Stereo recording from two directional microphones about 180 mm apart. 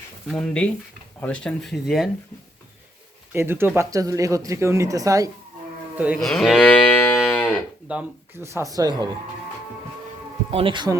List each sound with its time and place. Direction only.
0.3 s speech: 5° left (ahead or behind)
3.3 s speech: 15° right (ahead or behind)
6.1 s moo: centre (ahead or behind)
7.9 s speech: 10° right (ahead or behind)
10.5 s speech: 30° right (ahead or behind)